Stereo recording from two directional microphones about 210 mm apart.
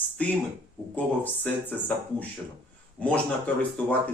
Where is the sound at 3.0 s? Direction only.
5° left (ahead or behind).